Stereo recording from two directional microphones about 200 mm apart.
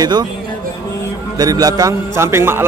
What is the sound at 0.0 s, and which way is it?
Speech, 20° right (ahead or behind).